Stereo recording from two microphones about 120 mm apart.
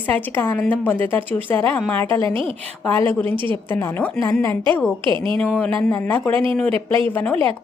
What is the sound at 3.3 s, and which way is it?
Speech, 45° right (ahead or behind).